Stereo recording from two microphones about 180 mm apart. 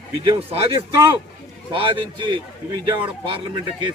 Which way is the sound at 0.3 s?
35° right (ahead or behind).